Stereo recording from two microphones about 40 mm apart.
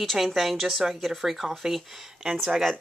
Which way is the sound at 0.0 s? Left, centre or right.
Centre.